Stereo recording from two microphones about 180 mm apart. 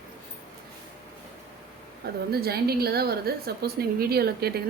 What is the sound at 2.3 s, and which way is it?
A woman's voice, 60° right (ahead or behind).